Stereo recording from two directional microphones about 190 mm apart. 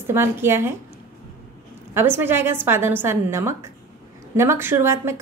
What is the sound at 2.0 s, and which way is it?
A woman's voice, 10° right (ahead or behind).